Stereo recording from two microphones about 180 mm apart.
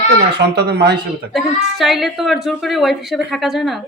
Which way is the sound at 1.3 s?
Centre (ahead or behind).